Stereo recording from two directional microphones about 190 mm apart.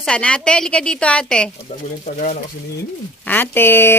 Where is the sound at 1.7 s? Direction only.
30° left (ahead or behind).